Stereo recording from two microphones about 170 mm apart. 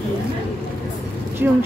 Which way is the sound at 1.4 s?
10° right (ahead or behind).